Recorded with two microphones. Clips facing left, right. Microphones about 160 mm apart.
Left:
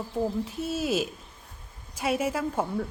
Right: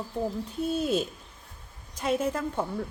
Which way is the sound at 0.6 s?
5° left (ahead or behind).